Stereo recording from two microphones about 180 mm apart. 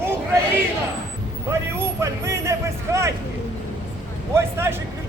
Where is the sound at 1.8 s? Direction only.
15° right (ahead or behind).